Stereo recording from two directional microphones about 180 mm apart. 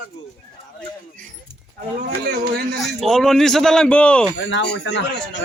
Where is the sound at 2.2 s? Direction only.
65° right (ahead or behind).